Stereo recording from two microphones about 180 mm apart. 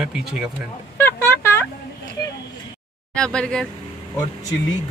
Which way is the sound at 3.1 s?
5° left (ahead or behind).